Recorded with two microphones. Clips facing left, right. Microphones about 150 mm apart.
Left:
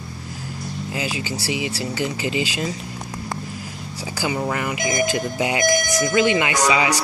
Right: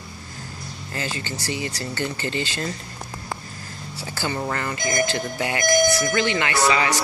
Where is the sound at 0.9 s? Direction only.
10° left (ahead or behind).